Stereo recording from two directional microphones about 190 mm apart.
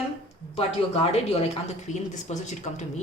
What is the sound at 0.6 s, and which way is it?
Speech, 35° left (ahead or behind).